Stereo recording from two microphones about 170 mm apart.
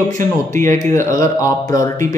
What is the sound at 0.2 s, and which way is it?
Speech, 50° right (ahead or behind).